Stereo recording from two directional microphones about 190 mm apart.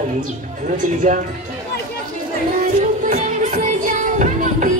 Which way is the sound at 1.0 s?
40° right (ahead or behind).